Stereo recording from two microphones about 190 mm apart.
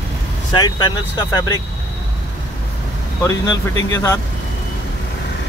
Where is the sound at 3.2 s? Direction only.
15° left (ahead or behind).